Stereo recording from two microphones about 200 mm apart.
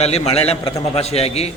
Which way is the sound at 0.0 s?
30° left (ahead or behind).